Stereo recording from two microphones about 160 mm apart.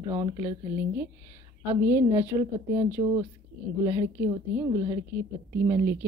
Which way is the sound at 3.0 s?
25° right (ahead or behind).